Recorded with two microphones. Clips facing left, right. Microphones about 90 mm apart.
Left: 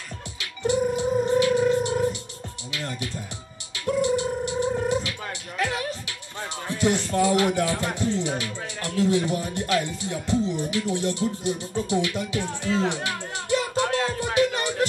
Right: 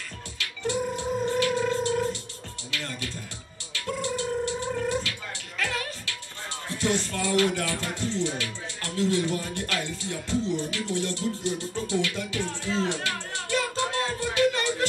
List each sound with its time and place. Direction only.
0.4 s music: 15° left (ahead or behind)
4.8 s cat: 15° left (ahead or behind)
5.6 s music: 20° left (ahead or behind)
6.8 s speech: 15° left (ahead or behind)
12.9 s music: 20° left (ahead or behind)
13.7 s music: 65° left (ahead or behind)
14.3 s music: 15° left (ahead or behind)